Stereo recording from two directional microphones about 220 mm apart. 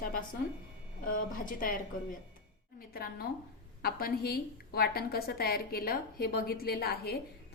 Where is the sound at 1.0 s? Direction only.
40° left (ahead or behind).